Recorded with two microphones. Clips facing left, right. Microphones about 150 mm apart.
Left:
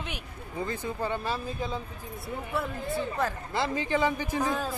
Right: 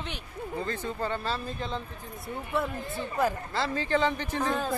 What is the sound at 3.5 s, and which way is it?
A man's voice, 15° left (ahead or behind).